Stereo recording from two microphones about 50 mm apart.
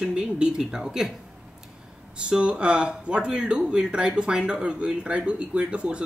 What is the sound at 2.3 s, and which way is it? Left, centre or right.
Speech, right.